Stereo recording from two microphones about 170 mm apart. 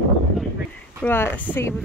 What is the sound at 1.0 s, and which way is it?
Speech, 15° left (ahead or behind).